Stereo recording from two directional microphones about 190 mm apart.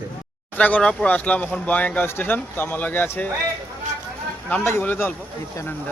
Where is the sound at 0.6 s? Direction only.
5° left (ahead or behind).